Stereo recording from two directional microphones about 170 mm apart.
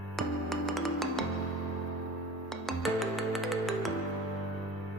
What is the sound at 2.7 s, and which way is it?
Music, centre (ahead or behind).